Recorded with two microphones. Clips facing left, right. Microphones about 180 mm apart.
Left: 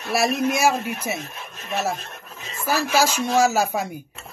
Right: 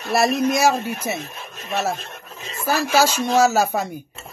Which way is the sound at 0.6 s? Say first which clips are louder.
Right 2 dB; 35° right (ahead or behind).